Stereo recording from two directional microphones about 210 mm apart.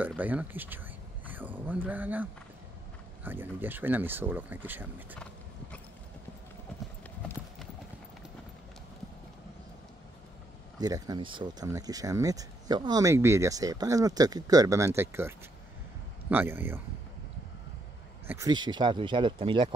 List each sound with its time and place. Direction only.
0.0 s speech: 10° right (ahead or behind)
3.3 s speech: 10° right (ahead or behind)
10.8 s speech: 15° right (ahead or behind)
18.2 s speech: 15° right (ahead or behind)